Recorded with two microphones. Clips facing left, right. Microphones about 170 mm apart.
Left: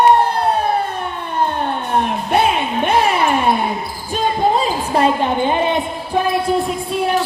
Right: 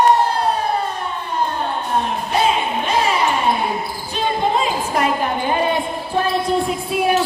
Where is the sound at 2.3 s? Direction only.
60° left (ahead or behind).